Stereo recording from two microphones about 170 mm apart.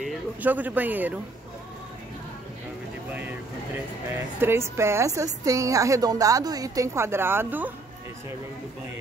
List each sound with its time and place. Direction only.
0.0 s a man's voice: 10° right (ahead or behind)
3.1 s a man's voice: 10° right (ahead or behind)